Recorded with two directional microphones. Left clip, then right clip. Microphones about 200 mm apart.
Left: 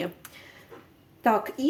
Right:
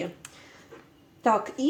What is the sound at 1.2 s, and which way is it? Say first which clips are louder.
Speech: even; 10° left (ahead or behind).